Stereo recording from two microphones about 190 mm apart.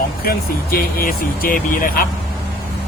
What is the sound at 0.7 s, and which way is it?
Speech, 50° left (ahead or behind).